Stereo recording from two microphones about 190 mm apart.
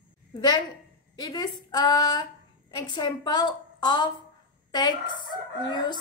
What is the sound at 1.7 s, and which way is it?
A woman's voice, 20° left (ahead or behind).